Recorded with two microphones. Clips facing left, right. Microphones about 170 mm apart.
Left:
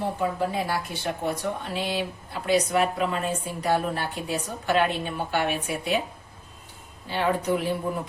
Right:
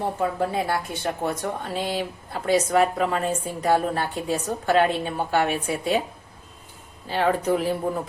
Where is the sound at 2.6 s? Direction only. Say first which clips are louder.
Right 3 dB; 45° right (ahead or behind).